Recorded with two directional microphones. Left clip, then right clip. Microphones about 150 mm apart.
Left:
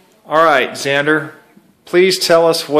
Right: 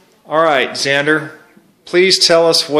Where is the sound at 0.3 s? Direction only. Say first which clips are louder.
Left 1 dB; 5° right (ahead or behind).